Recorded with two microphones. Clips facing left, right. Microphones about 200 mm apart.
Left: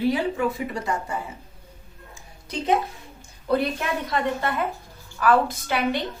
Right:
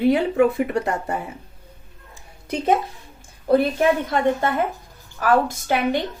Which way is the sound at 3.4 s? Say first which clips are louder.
Right 7 dB; 50° right (ahead or behind).